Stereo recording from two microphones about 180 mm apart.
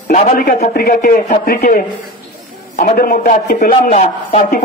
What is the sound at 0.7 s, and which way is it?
Speech, 55° left (ahead or behind).